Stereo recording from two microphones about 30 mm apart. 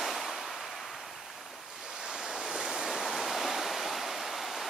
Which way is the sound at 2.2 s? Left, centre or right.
Right.